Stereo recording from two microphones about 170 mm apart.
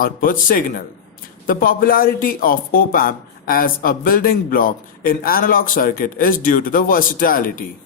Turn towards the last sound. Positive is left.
turn(degrees=55)  # may be behind; listen again after turning